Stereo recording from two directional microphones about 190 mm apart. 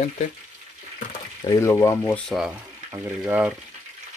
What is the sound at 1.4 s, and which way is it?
Speech, 20° left (ahead or behind).